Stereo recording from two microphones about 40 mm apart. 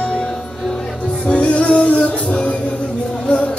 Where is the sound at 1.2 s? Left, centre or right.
Left.